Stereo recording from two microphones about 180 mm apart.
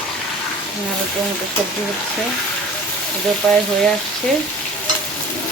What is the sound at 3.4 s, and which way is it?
Speech, 5° left (ahead or behind).